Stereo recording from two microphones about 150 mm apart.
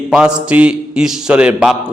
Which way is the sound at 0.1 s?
5° right (ahead or behind).